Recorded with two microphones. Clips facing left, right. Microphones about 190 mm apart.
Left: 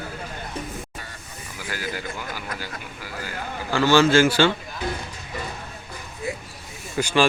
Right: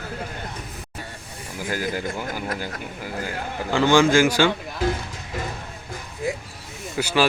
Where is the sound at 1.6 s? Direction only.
45° right (ahead or behind).